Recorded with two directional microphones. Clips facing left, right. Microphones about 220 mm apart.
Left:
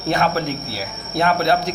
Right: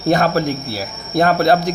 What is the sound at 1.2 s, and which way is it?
Speech, 40° right (ahead or behind).